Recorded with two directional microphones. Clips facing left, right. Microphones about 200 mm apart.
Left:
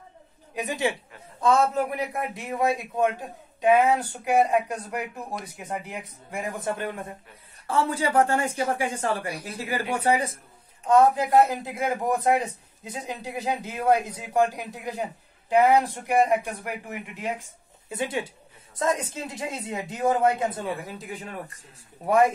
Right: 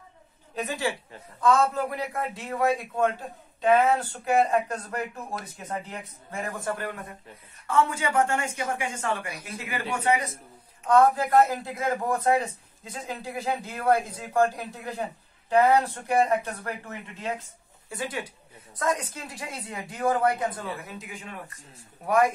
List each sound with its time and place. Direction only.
0.6 s a man's voice: 15° left (ahead or behind); by 10.3 s 30° left (ahead or behind)
10.9 s a man's voice: 20° left (ahead or behind); by 21.3 s 35° left (ahead or behind)